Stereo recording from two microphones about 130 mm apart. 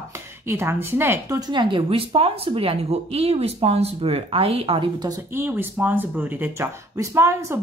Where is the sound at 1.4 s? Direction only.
35° right (ahead or behind).